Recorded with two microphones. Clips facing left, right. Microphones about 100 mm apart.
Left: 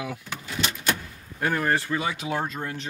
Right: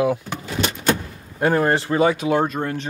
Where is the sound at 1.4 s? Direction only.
30° right (ahead or behind).